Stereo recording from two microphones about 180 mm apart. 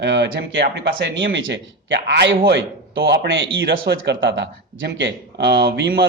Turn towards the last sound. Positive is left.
turn(degrees=-70)  # may be behind; listen again after turning